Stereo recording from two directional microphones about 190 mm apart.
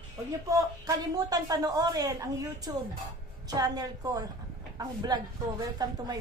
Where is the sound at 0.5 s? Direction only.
20° right (ahead or behind).